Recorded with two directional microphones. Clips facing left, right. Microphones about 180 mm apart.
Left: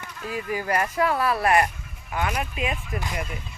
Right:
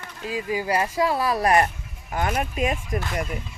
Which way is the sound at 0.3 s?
15° right (ahead or behind).